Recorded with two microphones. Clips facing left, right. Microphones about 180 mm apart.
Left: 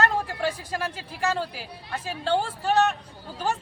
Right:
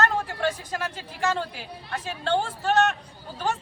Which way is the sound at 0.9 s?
5° left (ahead or behind).